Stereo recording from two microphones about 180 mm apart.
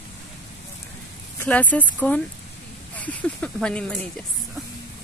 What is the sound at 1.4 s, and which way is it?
Speech, 10° left (ahead or behind).